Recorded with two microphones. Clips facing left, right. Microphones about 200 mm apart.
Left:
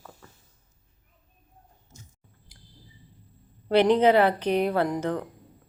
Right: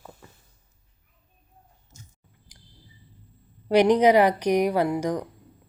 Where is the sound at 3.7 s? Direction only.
15° right (ahead or behind).